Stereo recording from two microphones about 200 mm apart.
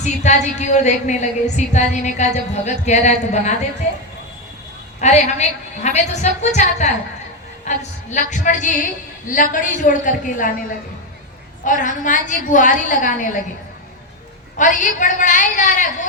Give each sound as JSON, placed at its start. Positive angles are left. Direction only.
{"t": 0.0, "sound": "music", "side_deg": 35}
{"t": 4.9, "sound": "music", "side_deg": 35}
{"t": 11.6, "sound": "music", "side_deg": 40}
{"t": 14.5, "sound": "music", "side_deg": 40}